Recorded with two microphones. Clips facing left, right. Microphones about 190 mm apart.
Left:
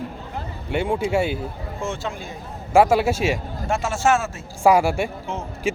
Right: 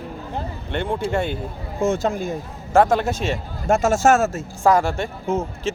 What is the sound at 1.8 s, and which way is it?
Speech, 45° right (ahead or behind).